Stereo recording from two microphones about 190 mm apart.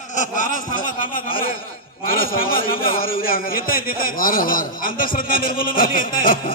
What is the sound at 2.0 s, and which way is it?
A man's voice, 50° left (ahead or behind).